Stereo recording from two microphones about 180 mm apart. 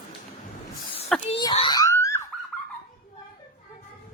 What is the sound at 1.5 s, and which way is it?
Boing, 25° left (ahead or behind).